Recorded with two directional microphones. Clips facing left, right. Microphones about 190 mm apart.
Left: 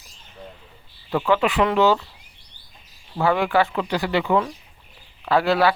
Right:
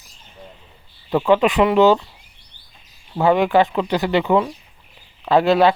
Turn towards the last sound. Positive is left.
turn(degrees=-20)  # may be behind; listen again after turning